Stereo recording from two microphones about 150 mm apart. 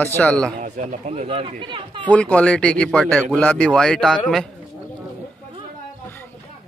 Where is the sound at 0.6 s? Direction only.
55° right (ahead or behind); by 2.0 s 35° right (ahead or behind).